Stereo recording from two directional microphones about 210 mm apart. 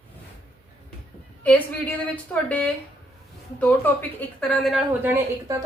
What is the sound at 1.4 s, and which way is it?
Speech, 5° left (ahead or behind).